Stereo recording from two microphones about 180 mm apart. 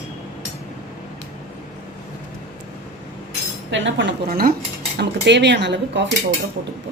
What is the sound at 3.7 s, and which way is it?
Speech, 90° right.